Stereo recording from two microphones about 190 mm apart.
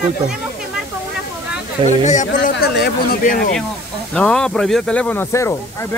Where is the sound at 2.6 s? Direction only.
55° left (ahead or behind).